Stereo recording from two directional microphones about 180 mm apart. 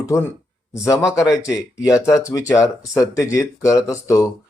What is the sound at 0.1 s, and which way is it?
Speech, 15° left (ahead or behind).